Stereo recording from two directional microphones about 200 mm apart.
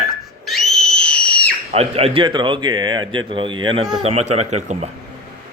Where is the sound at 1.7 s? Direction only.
30° right (ahead or behind).